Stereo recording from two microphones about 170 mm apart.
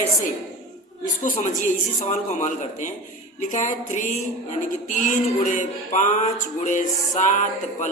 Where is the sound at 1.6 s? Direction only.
45° left (ahead or behind).